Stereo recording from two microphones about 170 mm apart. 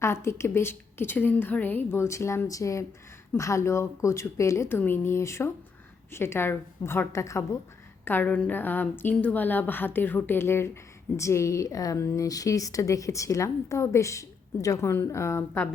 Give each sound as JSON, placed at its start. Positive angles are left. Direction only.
{"t": 0.0, "sound": "a woman's voice", "side_deg": 15}